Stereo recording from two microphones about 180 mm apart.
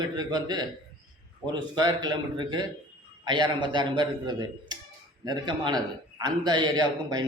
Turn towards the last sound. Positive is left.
turn(degrees=-20)  # may be behind; listen again after turning